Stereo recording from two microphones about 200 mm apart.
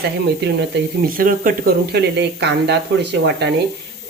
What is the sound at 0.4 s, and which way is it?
Speech, 55° right (ahead or behind).